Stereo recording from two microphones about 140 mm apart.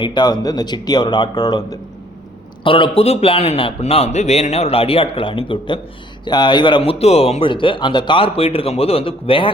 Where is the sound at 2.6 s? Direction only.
40° left (ahead or behind).